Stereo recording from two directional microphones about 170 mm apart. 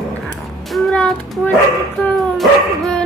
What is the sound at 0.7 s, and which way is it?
Child singing, 5° left (ahead or behind).